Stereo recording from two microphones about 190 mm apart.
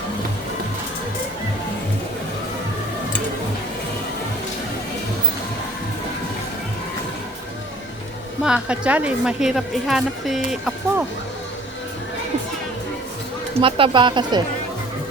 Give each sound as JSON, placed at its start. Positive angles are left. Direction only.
{"t": 8.4, "sound": "a woman's voice", "side_deg": -5}
{"t": 13.6, "sound": "speech", "side_deg": -30}